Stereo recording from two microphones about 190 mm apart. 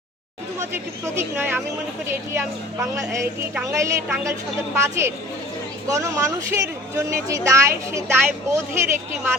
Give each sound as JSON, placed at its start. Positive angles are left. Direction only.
{"t": 0.6, "sound": "a woman's voice", "side_deg": -10}
{"t": 2.8, "sound": "a woman's voice", "side_deg": -15}